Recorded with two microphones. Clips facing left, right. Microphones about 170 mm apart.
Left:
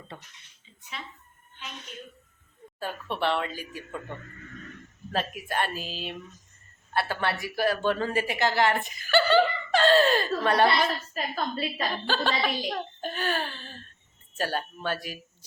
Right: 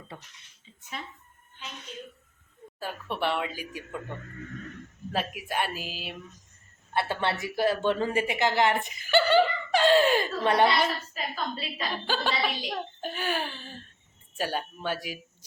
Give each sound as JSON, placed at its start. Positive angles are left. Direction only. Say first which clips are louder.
{"t": 2.8, "sound": "a woman's voice", "louder": "left 1 dB", "side_deg": -10}
{"t": 5.1, "sound": "a woman's voice", "louder": "left 1 dB", "side_deg": -10}
{"t": 6.9, "sound": "a woman's voice", "louder": "even", "side_deg": -20}
{"t": 11.1, "sound": "a woman's voice", "louder": "left 3 dB", "side_deg": 45}
{"t": 12.0, "sound": "a woman's voice", "louder": "left 1 dB", "side_deg": -10}